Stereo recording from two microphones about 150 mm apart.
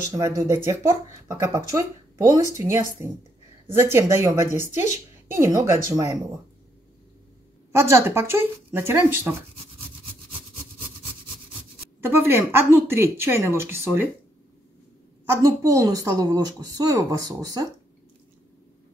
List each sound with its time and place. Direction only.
0.1 s a woman's voice: 20° right (ahead or behind)
7.7 s speech: 20° right (ahead or behind)
12.0 s speech: 15° right (ahead or behind)
15.2 s a woman's voice: 20° right (ahead or behind)